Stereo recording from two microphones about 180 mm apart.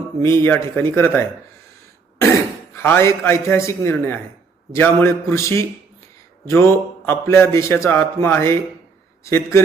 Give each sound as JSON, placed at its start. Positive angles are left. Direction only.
{"t": 0.2, "sound": "a man's voice", "side_deg": 15}
{"t": 2.7, "sound": "a man's voice", "side_deg": 15}